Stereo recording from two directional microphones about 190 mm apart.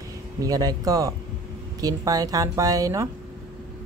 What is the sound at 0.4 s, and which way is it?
A woman's voice, 20° right (ahead or behind).